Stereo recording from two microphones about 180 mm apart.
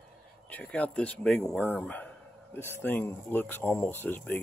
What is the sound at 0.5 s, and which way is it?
Speech, 10° left (ahead or behind).